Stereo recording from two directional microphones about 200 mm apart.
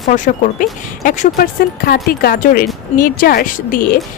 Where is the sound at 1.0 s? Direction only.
40° left (ahead or behind).